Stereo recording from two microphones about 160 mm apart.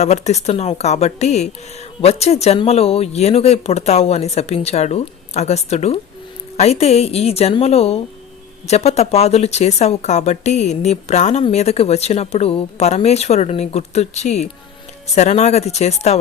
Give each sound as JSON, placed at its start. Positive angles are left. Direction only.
{"t": 0.0, "sound": "speech", "side_deg": 45}